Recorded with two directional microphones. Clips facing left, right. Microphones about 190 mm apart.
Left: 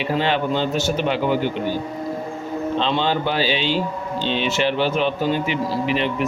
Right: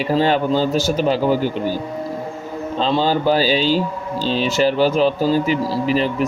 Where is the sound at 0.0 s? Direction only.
40° right (ahead or behind).